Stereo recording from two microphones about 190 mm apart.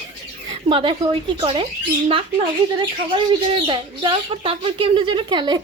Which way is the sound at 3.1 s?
25° right (ahead or behind).